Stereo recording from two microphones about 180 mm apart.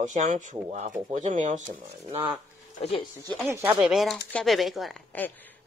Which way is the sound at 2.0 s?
25° right (ahead or behind).